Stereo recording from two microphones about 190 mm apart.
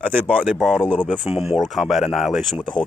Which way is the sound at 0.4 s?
Centre (ahead or behind).